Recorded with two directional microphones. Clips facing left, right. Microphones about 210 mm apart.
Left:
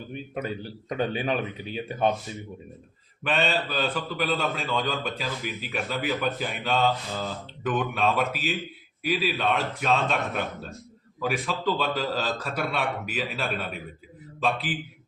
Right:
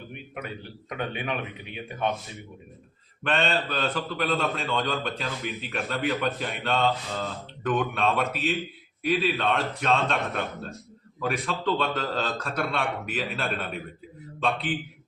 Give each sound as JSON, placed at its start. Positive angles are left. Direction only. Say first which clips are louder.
{"t": 0.1, "sound": "a man's voice", "louder": "left 7 dB", "side_deg": 35}
{"t": 3.2, "sound": "a man's voice", "louder": "even", "side_deg": 5}